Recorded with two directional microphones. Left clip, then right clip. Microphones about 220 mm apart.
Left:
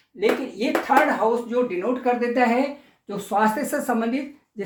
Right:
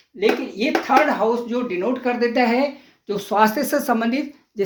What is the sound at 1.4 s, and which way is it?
Speech, 35° right (ahead or behind).